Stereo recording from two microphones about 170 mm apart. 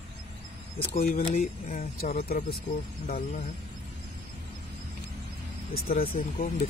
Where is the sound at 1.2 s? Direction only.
35° left (ahead or behind).